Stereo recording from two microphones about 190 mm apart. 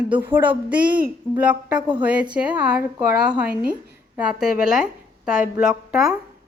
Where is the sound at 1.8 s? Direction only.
25° right (ahead or behind).